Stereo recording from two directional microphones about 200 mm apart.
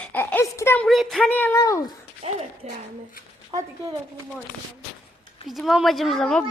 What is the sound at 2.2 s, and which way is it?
Speech, 30° right (ahead or behind).